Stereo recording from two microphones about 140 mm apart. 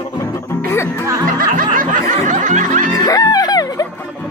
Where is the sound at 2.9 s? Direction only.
25° left (ahead or behind).